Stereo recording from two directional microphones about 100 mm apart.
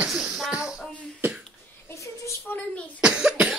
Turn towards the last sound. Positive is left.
turn(degrees=-10)  # may be behind; listen again after turning